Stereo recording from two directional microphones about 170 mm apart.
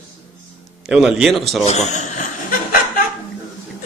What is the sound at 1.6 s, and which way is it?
Speech, 45° left (ahead or behind).